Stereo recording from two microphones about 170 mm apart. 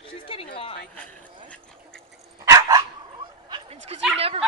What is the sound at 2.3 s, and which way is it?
Dog, 20° right (ahead or behind).